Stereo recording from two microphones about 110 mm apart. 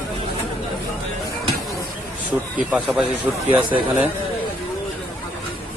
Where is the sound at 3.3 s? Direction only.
15° right (ahead or behind).